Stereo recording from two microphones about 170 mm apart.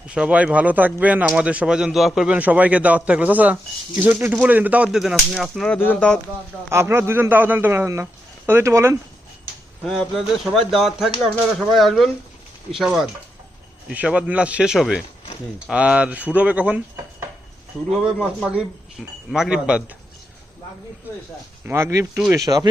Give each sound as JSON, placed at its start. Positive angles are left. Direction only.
{"t": 0.1, "sound": "speech", "side_deg": -5}
{"t": 6.7, "sound": "speech", "side_deg": -15}
{"t": 9.8, "sound": "speech", "side_deg": 0}
{"t": 21.7, "sound": "speech", "side_deg": -15}